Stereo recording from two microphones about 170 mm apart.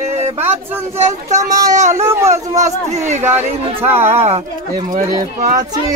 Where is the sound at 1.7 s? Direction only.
45° right (ahead or behind).